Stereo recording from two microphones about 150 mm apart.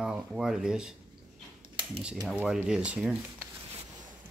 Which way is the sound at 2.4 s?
5° right (ahead or behind).